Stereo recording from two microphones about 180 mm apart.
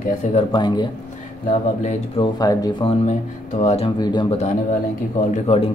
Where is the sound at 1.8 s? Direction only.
40° left (ahead or behind).